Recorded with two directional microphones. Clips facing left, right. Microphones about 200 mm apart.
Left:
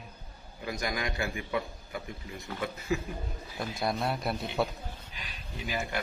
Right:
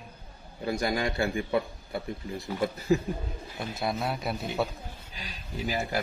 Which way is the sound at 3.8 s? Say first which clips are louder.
Even; centre (ahead or behind).